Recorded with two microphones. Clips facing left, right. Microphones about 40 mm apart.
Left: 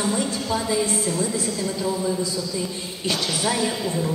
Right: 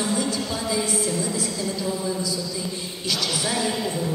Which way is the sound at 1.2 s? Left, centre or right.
Left.